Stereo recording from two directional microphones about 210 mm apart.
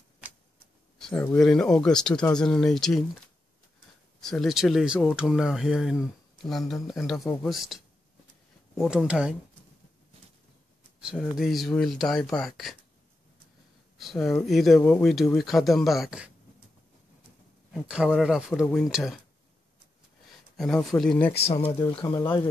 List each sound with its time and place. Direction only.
0.9 s speech: 5° left (ahead or behind)
4.2 s speech: centre (ahead or behind)
8.8 s speech: 5° right (ahead or behind)
11.0 s speech: 5° right (ahead or behind)
13.9 s speech: centre (ahead or behind)
17.8 s speech: 5° right (ahead or behind)
20.5 s speech: centre (ahead or behind)
21.5 s speech: 25° left (ahead or behind)